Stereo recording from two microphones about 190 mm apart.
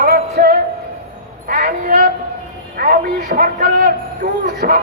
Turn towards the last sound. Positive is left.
turn(degrees=-50)  # may be behind; listen again after turning